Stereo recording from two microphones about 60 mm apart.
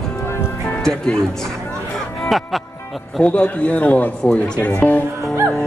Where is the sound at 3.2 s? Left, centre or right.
Left.